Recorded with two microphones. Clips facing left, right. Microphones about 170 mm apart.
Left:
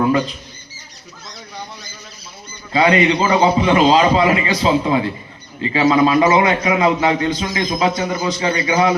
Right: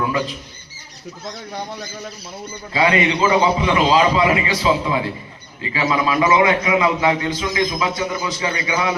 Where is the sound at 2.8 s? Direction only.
35° left (ahead or behind).